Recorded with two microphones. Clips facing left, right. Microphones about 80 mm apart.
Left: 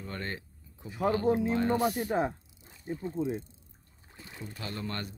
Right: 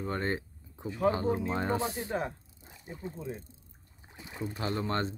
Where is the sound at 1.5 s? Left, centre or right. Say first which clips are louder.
Left 4 dB; right.